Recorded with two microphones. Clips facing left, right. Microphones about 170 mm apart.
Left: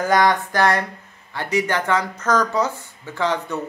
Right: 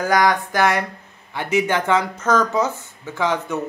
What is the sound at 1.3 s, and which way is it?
Speech, 15° right (ahead or behind).